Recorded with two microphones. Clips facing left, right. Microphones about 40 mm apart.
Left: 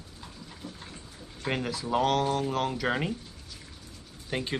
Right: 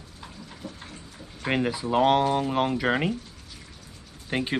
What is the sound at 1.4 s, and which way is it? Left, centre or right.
Speech, right.